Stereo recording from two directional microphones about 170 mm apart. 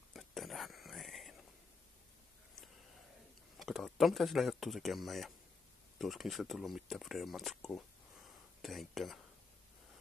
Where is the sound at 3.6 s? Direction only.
Centre (ahead or behind).